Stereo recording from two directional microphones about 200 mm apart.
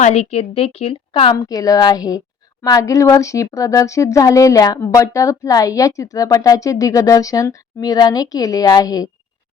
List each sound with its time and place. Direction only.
0.0 s a woman's voice: 35° left (ahead or behind)